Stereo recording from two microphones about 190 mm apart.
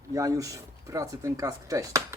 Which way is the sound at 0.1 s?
15° right (ahead or behind).